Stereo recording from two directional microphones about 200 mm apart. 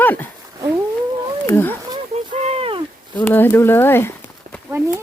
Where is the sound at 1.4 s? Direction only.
10° left (ahead or behind).